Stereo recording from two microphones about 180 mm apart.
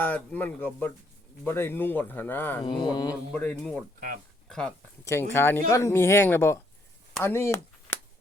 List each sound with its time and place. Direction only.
0.0 s speech: 10° left (ahead or behind)
2.8 s speech: 20° left (ahead or behind)
3.3 s speech: 5° left (ahead or behind)
5.0 s speech: 15° left (ahead or behind)